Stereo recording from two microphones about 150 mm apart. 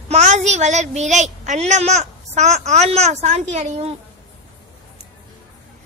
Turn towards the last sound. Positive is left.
turn(degrees=-45)  # may be behind; listen again after turning